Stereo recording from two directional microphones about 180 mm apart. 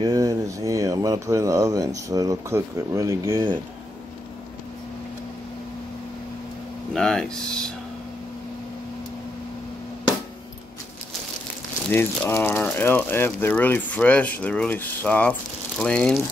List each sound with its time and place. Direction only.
0.0 s speech: 20° right (ahead or behind)
6.9 s speech: 5° left (ahead or behind)
11.9 s speech: 15° left (ahead or behind)